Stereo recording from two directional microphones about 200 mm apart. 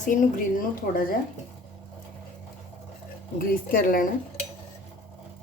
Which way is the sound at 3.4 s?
45° left (ahead or behind).